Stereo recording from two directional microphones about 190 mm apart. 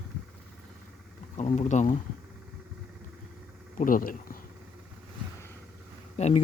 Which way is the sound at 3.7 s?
45° left (ahead or behind).